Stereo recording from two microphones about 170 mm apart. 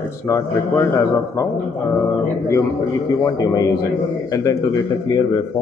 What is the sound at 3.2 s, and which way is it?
Speech, 20° left (ahead or behind).